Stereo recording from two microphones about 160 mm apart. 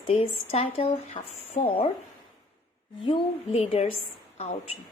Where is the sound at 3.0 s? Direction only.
35° left (ahead or behind).